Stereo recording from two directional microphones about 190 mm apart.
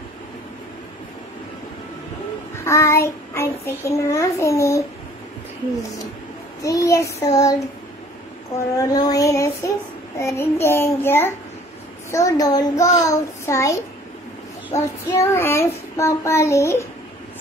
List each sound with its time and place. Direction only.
2.5 s child singing: 15° left (ahead or behind)
6.6 s child singing: 15° left (ahead or behind)
8.7 s child singing: 20° left (ahead or behind)